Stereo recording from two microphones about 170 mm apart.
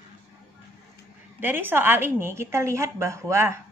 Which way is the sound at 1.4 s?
10° right (ahead or behind).